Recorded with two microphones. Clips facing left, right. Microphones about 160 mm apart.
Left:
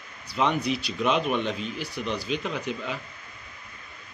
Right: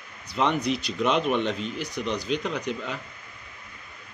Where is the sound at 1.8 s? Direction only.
15° right (ahead or behind).